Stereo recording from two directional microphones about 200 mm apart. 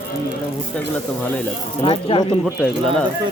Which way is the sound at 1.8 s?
25° left (ahead or behind).